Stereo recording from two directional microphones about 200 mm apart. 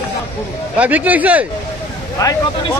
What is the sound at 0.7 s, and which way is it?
Speech, 5° right (ahead or behind).